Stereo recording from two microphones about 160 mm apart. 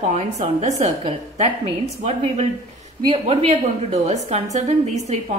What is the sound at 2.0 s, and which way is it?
A woman's voice, 40° right (ahead or behind).